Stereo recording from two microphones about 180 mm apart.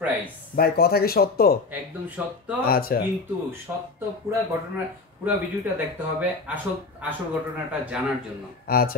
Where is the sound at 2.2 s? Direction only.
5° right (ahead or behind).